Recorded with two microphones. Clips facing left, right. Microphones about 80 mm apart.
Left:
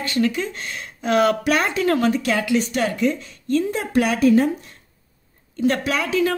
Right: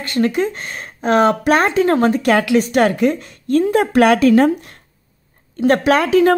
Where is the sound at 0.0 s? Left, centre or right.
Right.